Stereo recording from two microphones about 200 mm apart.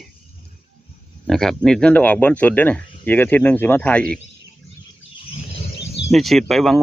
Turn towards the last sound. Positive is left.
turn(degrees=0)  # may be behind; listen again after turning